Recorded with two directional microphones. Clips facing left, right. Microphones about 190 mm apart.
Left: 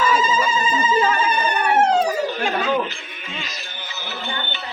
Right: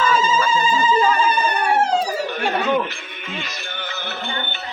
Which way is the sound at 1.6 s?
30° right (ahead or behind).